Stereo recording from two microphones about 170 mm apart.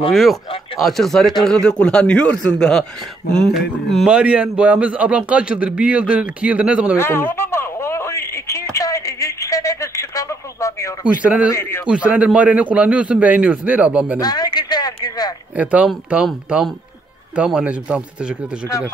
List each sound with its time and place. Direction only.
0.1 s a man's voice: centre (ahead or behind)
7.0 s a sound: 15° left (ahead or behind)
11.1 s a man's voice: 5° right (ahead or behind)
11.5 s a man's voice: 15° left (ahead or behind)
11.8 s a man's voice: 5° right (ahead or behind)
14.2 s a sound: 25° left (ahead or behind)
15.5 s a man's voice: 10° right (ahead or behind)